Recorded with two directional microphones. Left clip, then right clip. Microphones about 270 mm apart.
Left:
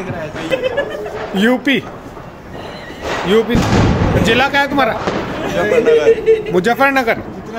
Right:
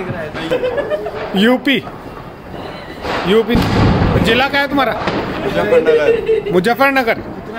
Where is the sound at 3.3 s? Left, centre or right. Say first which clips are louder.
Even; centre.